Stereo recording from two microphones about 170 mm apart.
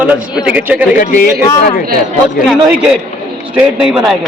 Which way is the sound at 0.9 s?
50° left (ahead or behind).